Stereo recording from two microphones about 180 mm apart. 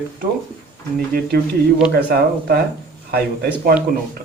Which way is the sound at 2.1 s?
55° right (ahead or behind).